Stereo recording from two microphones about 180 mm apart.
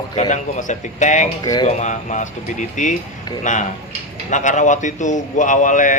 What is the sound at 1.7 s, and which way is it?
Speech, 40° left (ahead or behind).